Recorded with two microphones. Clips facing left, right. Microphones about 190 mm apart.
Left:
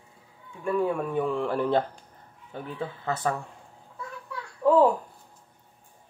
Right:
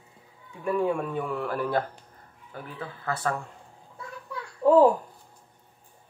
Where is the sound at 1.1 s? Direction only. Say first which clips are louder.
Left 3 dB; 20° left (ahead or behind).